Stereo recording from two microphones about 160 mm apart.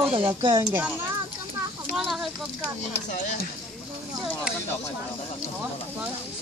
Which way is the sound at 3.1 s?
50° left (ahead or behind).